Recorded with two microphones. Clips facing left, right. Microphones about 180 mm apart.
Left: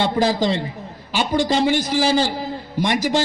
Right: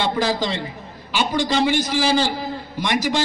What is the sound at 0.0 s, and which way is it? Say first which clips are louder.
A man's voice: left 3 dB; 40° left (ahead or behind).